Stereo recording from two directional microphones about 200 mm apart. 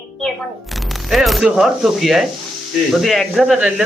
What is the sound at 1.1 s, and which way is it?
Speech, centre (ahead or behind).